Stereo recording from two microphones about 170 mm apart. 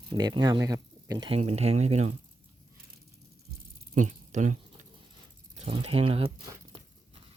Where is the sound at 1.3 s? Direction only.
40° right (ahead or behind).